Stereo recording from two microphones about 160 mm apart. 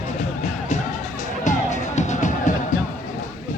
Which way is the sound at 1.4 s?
50° left (ahead or behind).